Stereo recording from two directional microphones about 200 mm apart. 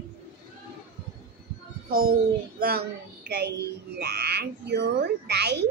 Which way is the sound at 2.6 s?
50° right (ahead or behind).